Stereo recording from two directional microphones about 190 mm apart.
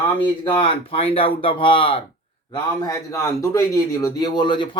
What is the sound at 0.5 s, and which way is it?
A man's voice, 30° left (ahead or behind).